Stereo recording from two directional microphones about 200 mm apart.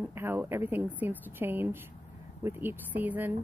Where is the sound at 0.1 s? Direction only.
10° right (ahead or behind).